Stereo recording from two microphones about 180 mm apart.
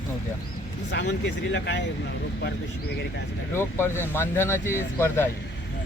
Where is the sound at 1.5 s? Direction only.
75° left (ahead or behind).